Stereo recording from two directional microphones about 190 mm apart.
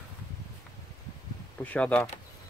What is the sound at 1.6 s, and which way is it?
Speech, 10° left (ahead or behind).